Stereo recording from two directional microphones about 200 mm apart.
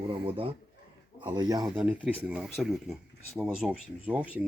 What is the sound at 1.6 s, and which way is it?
Speech, 5° right (ahead or behind).